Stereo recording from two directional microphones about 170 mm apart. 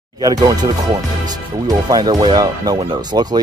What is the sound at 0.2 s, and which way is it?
Speech, 20° right (ahead or behind).